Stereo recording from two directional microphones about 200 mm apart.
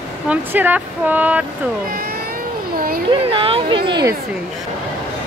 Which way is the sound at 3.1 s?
25° right (ahead or behind).